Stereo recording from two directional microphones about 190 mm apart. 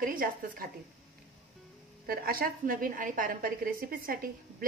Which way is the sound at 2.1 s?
50° right (ahead or behind).